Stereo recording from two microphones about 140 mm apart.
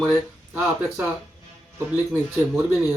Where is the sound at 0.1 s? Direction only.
10° right (ahead or behind).